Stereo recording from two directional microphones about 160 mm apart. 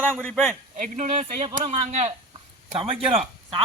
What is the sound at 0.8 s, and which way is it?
Speech, 55° right (ahead or behind).